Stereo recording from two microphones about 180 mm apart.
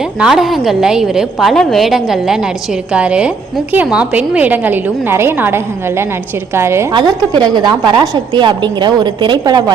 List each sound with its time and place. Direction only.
0.2 s a woman's voice: centre (ahead or behind)
6.9 s a woman's voice: 25° right (ahead or behind)